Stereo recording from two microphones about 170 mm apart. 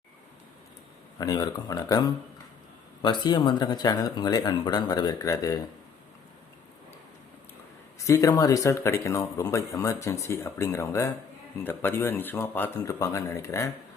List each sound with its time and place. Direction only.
1.2 s speech: 25° left (ahead or behind)
7.9 s speech: 20° left (ahead or behind)